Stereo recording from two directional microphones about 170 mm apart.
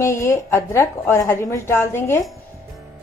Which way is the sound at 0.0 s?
15° left (ahead or behind).